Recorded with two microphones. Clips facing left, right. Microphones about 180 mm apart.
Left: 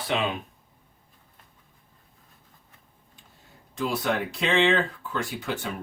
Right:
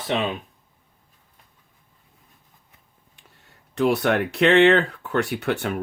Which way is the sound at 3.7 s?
70° right (ahead or behind).